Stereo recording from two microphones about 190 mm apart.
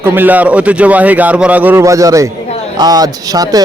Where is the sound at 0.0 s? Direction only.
10° right (ahead or behind).